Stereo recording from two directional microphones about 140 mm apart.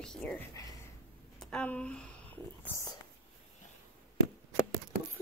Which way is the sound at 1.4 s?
10° left (ahead or behind).